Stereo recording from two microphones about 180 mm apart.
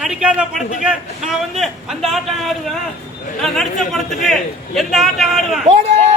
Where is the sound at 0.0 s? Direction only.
5° right (ahead or behind).